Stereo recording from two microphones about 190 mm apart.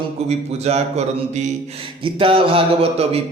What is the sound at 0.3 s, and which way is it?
Speech, 35° right (ahead or behind).